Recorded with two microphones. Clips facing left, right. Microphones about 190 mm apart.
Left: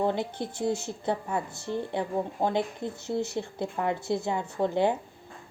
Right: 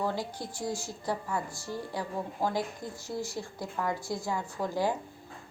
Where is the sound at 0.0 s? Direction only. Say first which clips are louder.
Left 5 dB; 25° left (ahead or behind).